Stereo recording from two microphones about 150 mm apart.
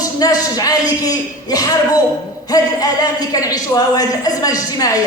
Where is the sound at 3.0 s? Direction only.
25° left (ahead or behind).